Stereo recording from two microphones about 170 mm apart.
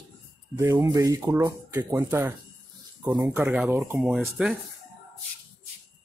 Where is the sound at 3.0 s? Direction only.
Centre (ahead or behind).